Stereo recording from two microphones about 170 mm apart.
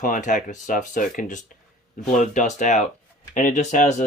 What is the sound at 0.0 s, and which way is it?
Speech, 50° left (ahead or behind).